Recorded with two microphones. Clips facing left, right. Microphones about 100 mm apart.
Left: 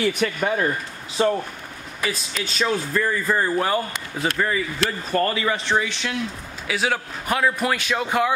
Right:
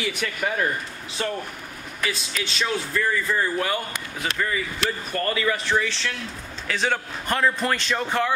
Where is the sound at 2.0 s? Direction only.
40° left (ahead or behind).